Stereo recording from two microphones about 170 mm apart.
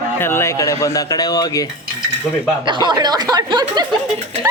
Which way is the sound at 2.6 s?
25° right (ahead or behind).